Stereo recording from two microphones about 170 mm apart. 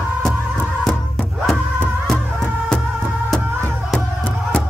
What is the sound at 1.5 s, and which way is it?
Music, 5° left (ahead or behind).